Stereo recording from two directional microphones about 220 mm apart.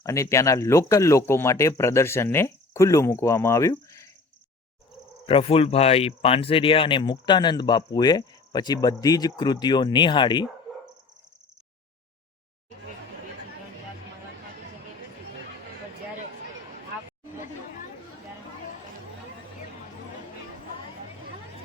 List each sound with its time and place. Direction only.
0.0 s speech: 15° left (ahead or behind)
5.2 s speech: 25° left (ahead or behind)